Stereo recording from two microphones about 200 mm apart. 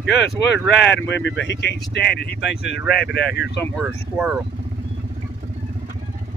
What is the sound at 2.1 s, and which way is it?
Speech, 55° left (ahead or behind).